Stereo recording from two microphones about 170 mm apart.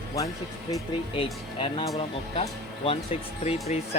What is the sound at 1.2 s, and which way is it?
Speech, 30° left (ahead or behind).